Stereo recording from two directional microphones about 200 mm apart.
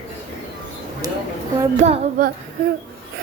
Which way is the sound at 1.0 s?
20° right (ahead or behind).